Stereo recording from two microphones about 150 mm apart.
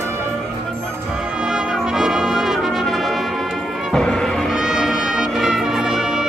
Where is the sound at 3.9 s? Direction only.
Centre (ahead or behind).